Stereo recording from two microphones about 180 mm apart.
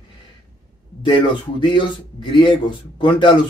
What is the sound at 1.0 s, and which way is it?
Speech, 25° left (ahead or behind).